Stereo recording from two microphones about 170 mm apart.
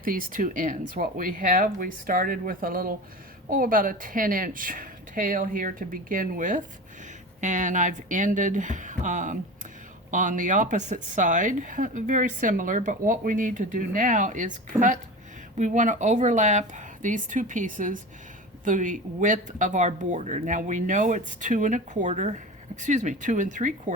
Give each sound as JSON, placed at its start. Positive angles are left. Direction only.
{"t": 0.0, "sound": "speech", "side_deg": -55}
{"t": 14.7, "sound": "speech", "side_deg": -20}
{"t": 15.5, "sound": "speech", "side_deg": -45}